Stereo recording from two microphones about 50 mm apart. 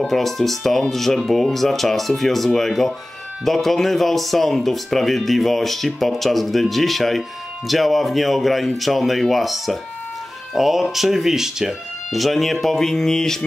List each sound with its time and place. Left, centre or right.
0.0 s speech: centre